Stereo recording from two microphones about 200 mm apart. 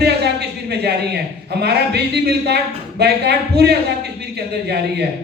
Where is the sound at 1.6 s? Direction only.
55° right (ahead or behind).